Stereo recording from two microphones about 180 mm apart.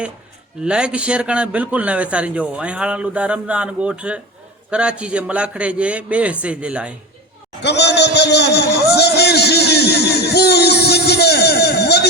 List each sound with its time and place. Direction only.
0.6 s a man's voice: 5° right (ahead or behind)
7.6 s a man's voice: 70° left (ahead or behind)